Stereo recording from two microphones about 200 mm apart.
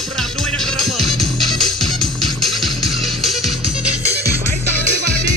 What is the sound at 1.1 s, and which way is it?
Music, centre (ahead or behind).